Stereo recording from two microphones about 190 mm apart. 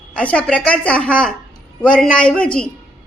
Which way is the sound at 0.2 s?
5° left (ahead or behind).